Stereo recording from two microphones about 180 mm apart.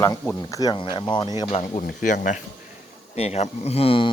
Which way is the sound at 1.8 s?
45° left (ahead or behind).